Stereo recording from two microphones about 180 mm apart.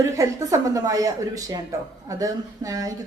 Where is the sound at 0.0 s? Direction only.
15° right (ahead or behind).